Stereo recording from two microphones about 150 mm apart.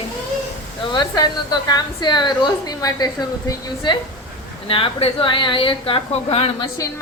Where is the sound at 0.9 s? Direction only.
25° left (ahead or behind).